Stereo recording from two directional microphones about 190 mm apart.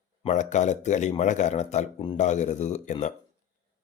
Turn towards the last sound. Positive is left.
turn(degrees=40)  # may be behind; listen again after turning